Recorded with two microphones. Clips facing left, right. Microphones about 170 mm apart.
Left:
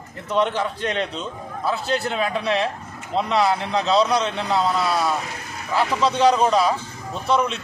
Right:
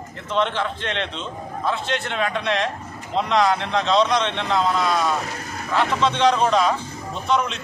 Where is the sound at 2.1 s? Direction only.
5° left (ahead or behind).